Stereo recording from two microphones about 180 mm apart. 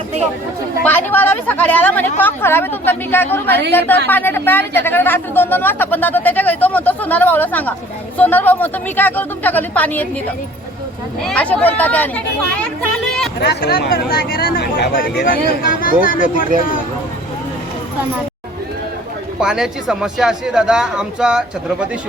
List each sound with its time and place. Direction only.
0.8 s speech: 10° left (ahead or behind)
11.3 s speech: 5° left (ahead or behind)
13.4 s speech: 60° left (ahead or behind)
19.4 s speech: 5° right (ahead or behind)